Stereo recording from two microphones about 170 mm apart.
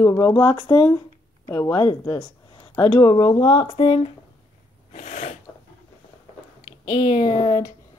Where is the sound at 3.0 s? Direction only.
20° left (ahead or behind).